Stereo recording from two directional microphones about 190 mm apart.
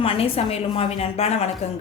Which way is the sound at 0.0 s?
30° left (ahead or behind).